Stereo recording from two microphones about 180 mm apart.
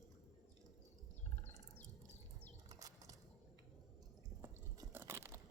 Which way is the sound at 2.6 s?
20° right (ahead or behind).